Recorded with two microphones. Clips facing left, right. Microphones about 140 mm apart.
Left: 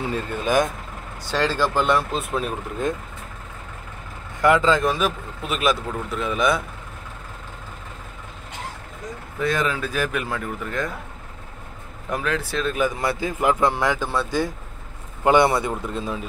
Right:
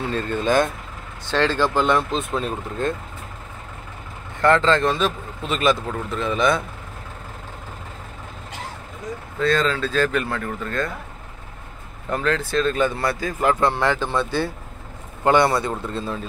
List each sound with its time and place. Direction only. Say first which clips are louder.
0.0 s speech: right 2 dB; 10° left (ahead or behind)
4.4 s speech: right 1 dB; 10° left (ahead or behind)
9.4 s speech: right 3 dB; 15° left (ahead or behind)
12.1 s a man's voice: right 3 dB; 10° left (ahead or behind)